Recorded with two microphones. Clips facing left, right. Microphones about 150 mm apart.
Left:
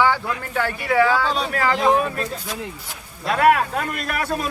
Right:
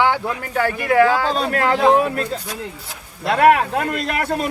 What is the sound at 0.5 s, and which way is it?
Speech, 45° right (ahead or behind).